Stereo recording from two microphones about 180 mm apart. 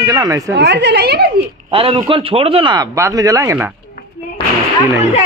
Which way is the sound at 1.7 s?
30° right (ahead or behind).